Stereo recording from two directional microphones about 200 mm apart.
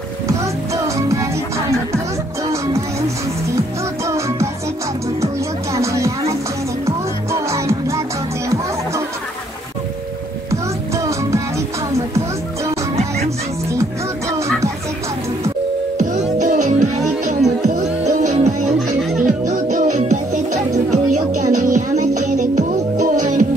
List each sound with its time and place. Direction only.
0.3 s music: 15° right (ahead or behind)
4.0 s music: 15° right (ahead or behind)
7.3 s music: 15° right (ahead or behind)
10.5 s music: 15° right (ahead or behind)
16.0 s music: 40° right (ahead or behind)